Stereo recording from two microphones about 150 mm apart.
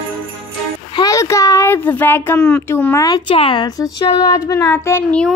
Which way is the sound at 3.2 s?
35° left (ahead or behind).